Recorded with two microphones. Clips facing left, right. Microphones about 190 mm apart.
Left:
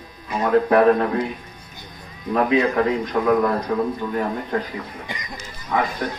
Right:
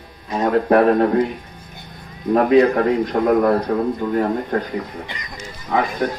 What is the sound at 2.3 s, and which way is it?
A man's voice, 40° right (ahead or behind).